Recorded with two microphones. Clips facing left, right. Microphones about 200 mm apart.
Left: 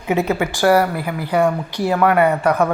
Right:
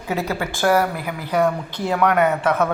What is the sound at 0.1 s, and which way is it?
Speech, 20° left (ahead or behind).